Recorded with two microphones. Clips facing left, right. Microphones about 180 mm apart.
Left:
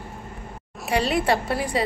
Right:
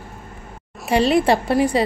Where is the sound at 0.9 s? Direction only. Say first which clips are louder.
Right 6 dB; 25° right (ahead or behind).